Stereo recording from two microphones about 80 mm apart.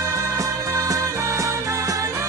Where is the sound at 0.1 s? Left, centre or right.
Right.